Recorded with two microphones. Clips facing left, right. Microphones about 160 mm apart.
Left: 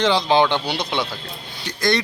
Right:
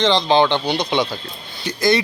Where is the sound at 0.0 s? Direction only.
10° left (ahead or behind).